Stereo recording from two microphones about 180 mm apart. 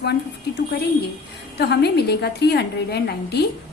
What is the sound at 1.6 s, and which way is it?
A woman's voice, 65° left (ahead or behind).